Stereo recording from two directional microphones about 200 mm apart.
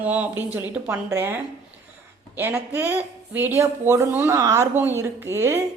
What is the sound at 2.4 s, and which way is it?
A woman's voice, 10° right (ahead or behind).